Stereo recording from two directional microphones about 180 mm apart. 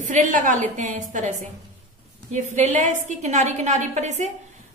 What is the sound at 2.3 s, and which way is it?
A woman's voice, 40° right (ahead or behind).